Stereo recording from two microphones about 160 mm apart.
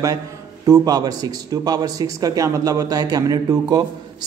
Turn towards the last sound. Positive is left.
turn(degrees=-25)  # may be behind; listen again after turning